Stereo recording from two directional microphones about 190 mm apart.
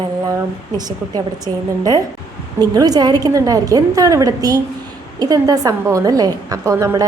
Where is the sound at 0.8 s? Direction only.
20° right (ahead or behind).